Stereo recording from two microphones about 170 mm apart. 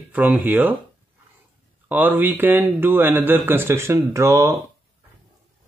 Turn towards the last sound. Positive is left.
turn(degrees=-15)  # may be behind; listen again after turning